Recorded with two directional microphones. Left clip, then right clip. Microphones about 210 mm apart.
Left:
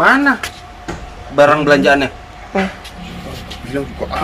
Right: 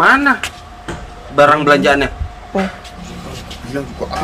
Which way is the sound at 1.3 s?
Centre (ahead or behind).